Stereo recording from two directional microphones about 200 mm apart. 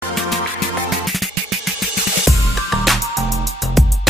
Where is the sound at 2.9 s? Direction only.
Centre (ahead or behind).